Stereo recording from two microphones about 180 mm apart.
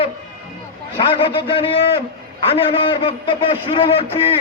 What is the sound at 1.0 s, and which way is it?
A man's voice, 30° left (ahead or behind).